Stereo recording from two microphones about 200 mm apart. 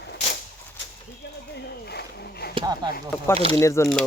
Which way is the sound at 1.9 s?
55° left (ahead or behind).